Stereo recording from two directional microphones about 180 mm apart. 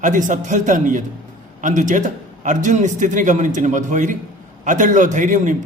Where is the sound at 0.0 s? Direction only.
45° right (ahead or behind).